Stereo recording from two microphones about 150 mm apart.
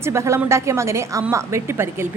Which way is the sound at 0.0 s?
20° right (ahead or behind).